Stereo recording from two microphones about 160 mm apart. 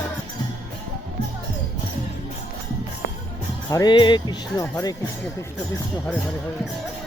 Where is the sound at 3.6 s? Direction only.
25° left (ahead or behind).